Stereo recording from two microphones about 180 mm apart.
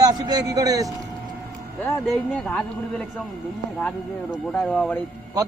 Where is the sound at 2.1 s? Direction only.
5° left (ahead or behind).